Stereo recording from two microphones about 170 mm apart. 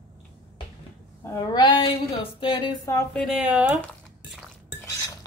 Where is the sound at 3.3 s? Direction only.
5° right (ahead or behind).